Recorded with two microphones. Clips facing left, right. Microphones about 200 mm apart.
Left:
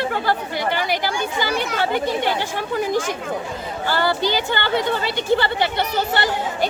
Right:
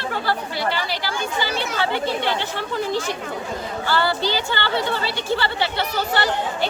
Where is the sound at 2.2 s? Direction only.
15° left (ahead or behind).